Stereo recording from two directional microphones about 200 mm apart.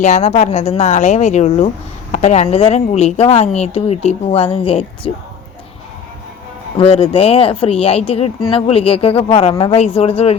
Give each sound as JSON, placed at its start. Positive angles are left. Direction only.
{"t": 0.0, "sound": "a woman's voice", "side_deg": 35}
{"t": 6.7, "sound": "speech", "side_deg": 25}